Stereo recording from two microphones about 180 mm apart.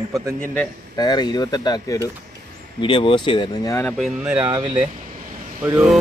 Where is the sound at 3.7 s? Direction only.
5° left (ahead or behind).